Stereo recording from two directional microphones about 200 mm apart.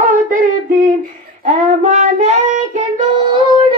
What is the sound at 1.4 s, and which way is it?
Child singing, 35° right (ahead or behind).